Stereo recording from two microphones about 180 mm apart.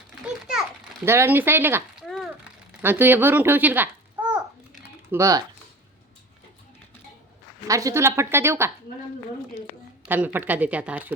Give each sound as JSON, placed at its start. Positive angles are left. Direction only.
{"t": 1.0, "sound": "a woman's voice", "side_deg": -15}
{"t": 2.0, "sound": "a sound", "side_deg": 0}
{"t": 2.8, "sound": "babbling", "side_deg": -10}
{"t": 5.1, "sound": "a woman's voice", "side_deg": -15}
{"t": 7.7, "sound": "a woman's voice", "side_deg": -20}
{"t": 10.1, "sound": "a woman's voice", "side_deg": -10}